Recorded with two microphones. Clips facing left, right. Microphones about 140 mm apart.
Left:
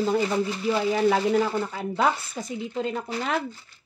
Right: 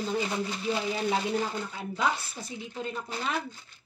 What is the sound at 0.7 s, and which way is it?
Speech, 90° left.